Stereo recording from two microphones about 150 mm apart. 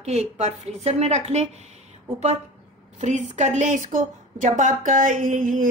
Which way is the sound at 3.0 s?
55° right (ahead or behind).